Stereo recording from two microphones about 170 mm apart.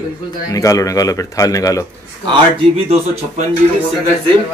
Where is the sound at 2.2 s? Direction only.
30° right (ahead or behind).